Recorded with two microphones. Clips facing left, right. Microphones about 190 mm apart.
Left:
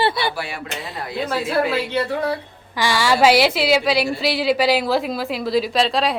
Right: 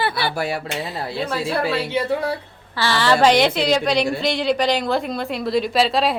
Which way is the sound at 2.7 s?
15° left (ahead or behind).